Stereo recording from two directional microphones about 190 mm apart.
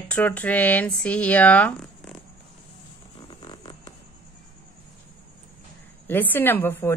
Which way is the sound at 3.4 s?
20° left (ahead or behind).